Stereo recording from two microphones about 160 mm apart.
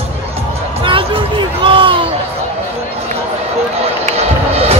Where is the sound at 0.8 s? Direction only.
35° right (ahead or behind).